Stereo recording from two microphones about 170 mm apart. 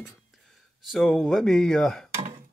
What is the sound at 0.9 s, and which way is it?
Speech, centre (ahead or behind).